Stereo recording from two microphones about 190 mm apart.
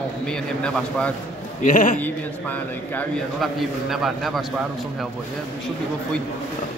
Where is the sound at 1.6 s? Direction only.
45° left (ahead or behind).